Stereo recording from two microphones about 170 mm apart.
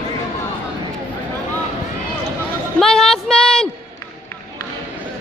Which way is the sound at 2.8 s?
5° left (ahead or behind).